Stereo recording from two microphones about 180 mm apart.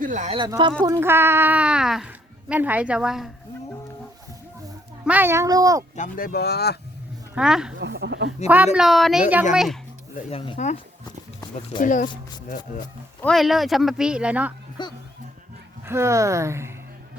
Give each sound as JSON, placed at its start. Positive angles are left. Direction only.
{"t": 0.0, "sound": "speech", "side_deg": -45}
{"t": 0.3, "sound": "speech", "side_deg": -25}
{"t": 5.0, "sound": "speech", "side_deg": -10}
{"t": 6.0, "sound": "speech", "side_deg": 55}
{"t": 7.3, "sound": "speech", "side_deg": -5}
{"t": 7.8, "sound": "speech", "side_deg": -70}
{"t": 8.4, "sound": "speech", "side_deg": -10}
{"t": 10.2, "sound": "speech", "side_deg": 35}
{"t": 11.8, "sound": "speech", "side_deg": 45}
{"t": 13.2, "sound": "speech", "side_deg": 0}
{"t": 14.8, "sound": "speech", "side_deg": 25}
{"t": 15.9, "sound": "speech", "side_deg": -15}